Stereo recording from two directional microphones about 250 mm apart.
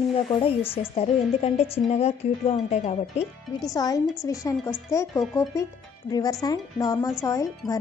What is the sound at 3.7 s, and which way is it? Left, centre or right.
Speech, centre.